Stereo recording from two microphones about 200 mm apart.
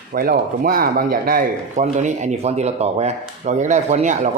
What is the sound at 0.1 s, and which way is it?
Speech, 45° right (ahead or behind).